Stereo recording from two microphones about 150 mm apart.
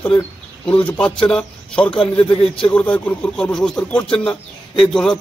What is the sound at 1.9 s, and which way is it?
Speech, 35° left (ahead or behind).